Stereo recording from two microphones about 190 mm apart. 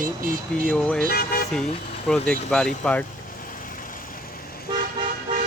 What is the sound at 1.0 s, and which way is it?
Speech, 50° left (ahead or behind).